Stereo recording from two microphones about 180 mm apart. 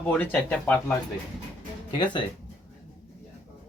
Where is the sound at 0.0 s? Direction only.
10° left (ahead or behind).